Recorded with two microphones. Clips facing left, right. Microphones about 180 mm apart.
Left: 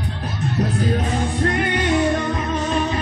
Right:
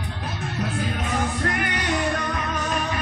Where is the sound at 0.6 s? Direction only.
35° left (ahead or behind).